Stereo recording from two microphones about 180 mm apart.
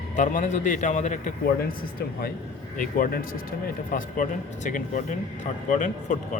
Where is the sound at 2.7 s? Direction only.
50° left (ahead or behind).